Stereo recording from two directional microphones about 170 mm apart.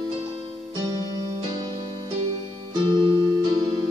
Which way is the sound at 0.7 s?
20° right (ahead or behind).